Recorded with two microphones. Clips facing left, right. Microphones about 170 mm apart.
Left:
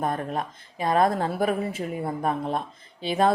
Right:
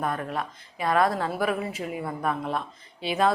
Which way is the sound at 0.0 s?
40° left (ahead or behind).